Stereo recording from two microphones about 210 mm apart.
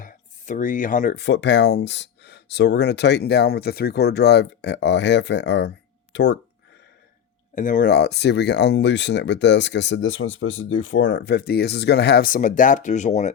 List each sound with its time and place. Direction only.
0.0 s speech: 40° left (ahead or behind); by 6.3 s 55° left (ahead or behind)
7.5 s speech: 40° left (ahead or behind)